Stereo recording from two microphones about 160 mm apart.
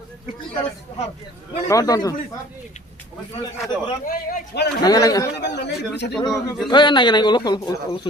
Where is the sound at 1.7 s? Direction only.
20° left (ahead or behind).